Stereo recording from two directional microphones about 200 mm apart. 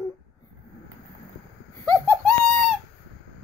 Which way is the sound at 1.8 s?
10° left (ahead or behind).